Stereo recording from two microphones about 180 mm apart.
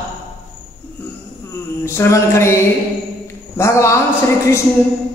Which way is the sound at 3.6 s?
15° left (ahead or behind).